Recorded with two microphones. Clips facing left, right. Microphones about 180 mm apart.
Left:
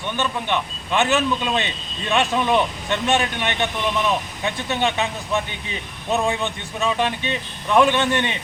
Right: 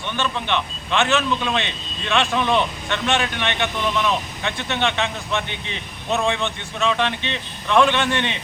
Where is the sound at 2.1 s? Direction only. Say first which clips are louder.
Left 1 dB; 15° left (ahead or behind).